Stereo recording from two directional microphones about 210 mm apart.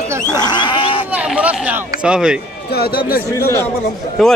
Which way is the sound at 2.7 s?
50° left (ahead or behind).